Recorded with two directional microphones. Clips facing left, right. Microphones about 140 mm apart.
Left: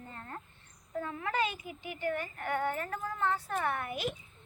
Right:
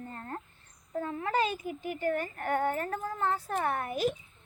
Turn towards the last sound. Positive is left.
turn(degrees=-40)  # may be behind; listen again after turning